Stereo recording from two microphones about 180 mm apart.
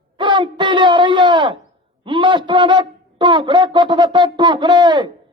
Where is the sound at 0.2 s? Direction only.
25° right (ahead or behind).